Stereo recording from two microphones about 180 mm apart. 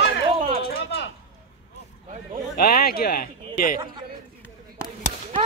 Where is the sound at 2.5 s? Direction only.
55° left (ahead or behind).